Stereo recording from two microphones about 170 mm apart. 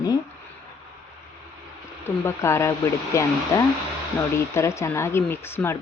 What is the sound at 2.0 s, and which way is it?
Speech, 15° left (ahead or behind).